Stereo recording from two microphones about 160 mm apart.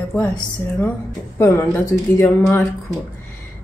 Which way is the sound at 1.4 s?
15° left (ahead or behind).